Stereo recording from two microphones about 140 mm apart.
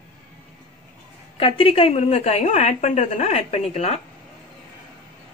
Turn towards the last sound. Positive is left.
turn(degrees=50)  # may be behind; listen again after turning